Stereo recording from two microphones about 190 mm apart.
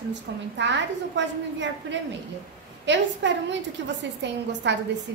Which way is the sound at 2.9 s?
70° right (ahead or behind).